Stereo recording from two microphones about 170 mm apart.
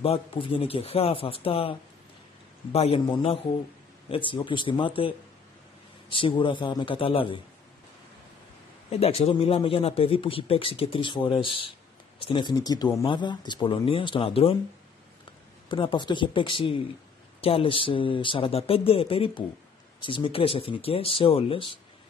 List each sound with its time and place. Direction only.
0.0 s a man's voice: 35° left (ahead or behind)
8.9 s a man's voice: 35° left (ahead or behind)
15.7 s a man's voice: 30° left (ahead or behind)